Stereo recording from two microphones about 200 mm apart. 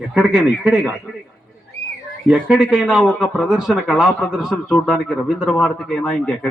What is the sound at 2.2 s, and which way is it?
Speech, 5° right (ahead or behind).